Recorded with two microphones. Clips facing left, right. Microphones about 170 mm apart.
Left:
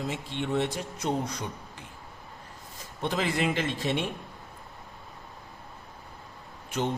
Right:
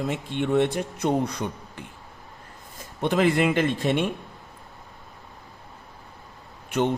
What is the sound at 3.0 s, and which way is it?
A man's voice, 60° right (ahead or behind).